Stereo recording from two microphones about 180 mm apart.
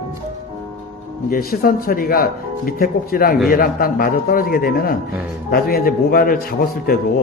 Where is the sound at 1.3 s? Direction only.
55° left (ahead or behind).